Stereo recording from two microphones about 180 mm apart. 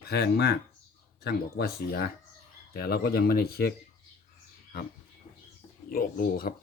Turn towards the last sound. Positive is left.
turn(degrees=55)  # may be behind; listen again after turning